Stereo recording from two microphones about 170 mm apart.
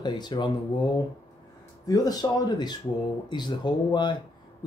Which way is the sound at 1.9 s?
20° left (ahead or behind).